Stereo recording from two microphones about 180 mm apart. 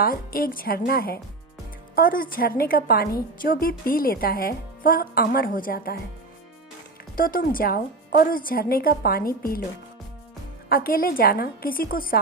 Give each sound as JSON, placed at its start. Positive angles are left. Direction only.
{"t": 0.0, "sound": "a woman's voice", "side_deg": 55}
{"t": 7.2, "sound": "a woman's voice", "side_deg": 50}
{"t": 10.7, "sound": "a woman's voice", "side_deg": 55}